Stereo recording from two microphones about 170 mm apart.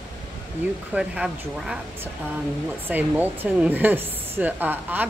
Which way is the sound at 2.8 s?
10° right (ahead or behind).